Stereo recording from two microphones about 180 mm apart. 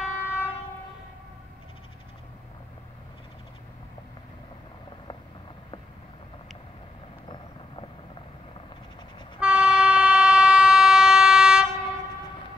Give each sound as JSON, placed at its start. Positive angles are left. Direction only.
{"t": 0.0, "sound": "train", "side_deg": -5}
{"t": 9.4, "sound": "train", "side_deg": -5}